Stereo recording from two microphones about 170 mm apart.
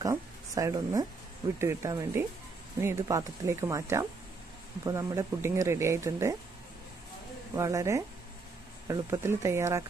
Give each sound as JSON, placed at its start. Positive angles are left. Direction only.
{"t": 0.0, "sound": "speech", "side_deg": -20}
{"t": 7.5, "sound": "speech", "side_deg": -15}